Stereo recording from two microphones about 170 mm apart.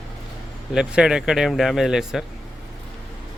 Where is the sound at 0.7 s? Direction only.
5° right (ahead or behind).